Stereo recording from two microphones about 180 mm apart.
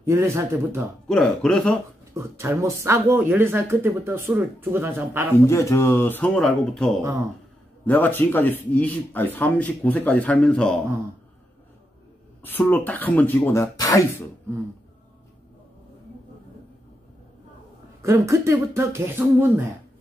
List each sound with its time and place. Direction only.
0.0 s speech: 15° right (ahead or behind)
1.0 s speech: centre (ahead or behind)
2.1 s speech: 15° right (ahead or behind)
5.5 s speech: 15° left (ahead or behind)
7.0 s speech: 15° right (ahead or behind)
7.8 s speech: 10° left (ahead or behind)
12.4 s speech: 10° left (ahead or behind)
18.0 s speech: 15° right (ahead or behind)